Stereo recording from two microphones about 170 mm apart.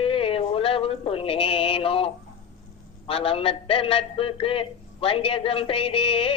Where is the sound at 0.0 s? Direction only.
35° left (ahead or behind).